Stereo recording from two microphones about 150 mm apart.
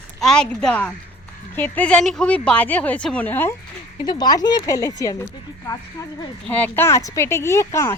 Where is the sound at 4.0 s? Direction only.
30° left (ahead or behind).